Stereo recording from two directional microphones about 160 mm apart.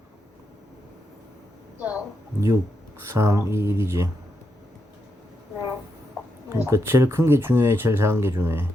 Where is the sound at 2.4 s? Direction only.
15° right (ahead or behind).